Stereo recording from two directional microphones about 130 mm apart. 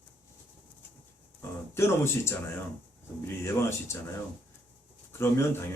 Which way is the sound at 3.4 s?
20° left (ahead or behind).